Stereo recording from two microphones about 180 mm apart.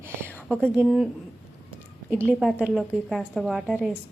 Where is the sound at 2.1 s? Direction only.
5° right (ahead or behind).